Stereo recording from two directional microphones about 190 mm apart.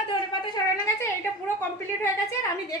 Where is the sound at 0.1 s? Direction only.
25° left (ahead or behind).